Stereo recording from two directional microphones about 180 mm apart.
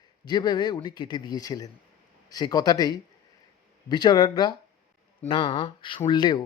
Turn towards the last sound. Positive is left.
turn(degrees=25)  # may be behind; listen again after turning